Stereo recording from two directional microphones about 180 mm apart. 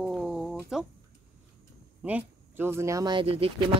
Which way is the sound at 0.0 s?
Centre (ahead or behind).